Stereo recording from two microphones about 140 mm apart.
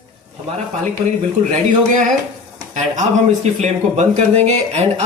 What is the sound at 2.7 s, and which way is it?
Speech, 60° right (ahead or behind).